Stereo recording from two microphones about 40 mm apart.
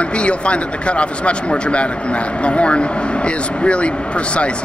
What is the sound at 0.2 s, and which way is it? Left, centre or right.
A woman's voice, left.